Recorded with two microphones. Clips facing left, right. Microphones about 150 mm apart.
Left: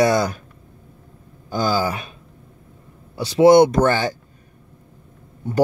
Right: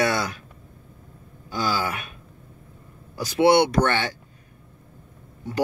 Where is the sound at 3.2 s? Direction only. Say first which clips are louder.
Left 6 dB; 35° left (ahead or behind).